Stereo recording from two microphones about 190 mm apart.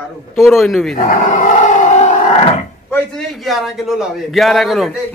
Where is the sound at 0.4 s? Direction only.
Centre (ahead or behind).